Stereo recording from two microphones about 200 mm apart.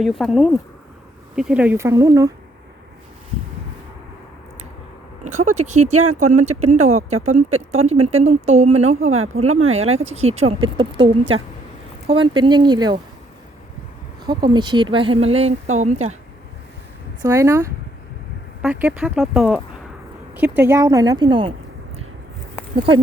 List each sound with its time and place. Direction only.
0.0 s speech: centre (ahead or behind); by 2.3 s 15° right (ahead or behind)
5.2 s speech: 90° right
5.5 s speech: 35° right (ahead or behind)
5.9 s speech: 90° right
6.4 s speech: 35° right (ahead or behind)
9.1 s speech: 90° right
9.9 s speech: 30° right (ahead or behind)
14.3 s speech: 20° right (ahead or behind)
17.2 s speech: 15° right (ahead or behind)